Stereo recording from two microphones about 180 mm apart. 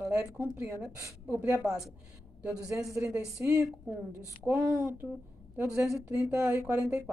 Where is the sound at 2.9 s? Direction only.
15° right (ahead or behind).